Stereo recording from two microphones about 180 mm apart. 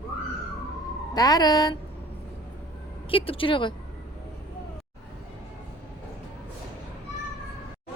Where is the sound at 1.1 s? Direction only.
20° left (ahead or behind).